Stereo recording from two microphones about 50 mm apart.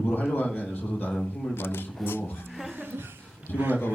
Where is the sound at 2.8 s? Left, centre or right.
Right.